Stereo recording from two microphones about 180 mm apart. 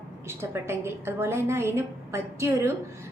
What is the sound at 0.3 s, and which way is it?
A woman's voice, 15° right (ahead or behind).